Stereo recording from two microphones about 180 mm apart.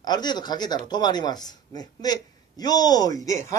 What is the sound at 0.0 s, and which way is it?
Speech, 25° left (ahead or behind).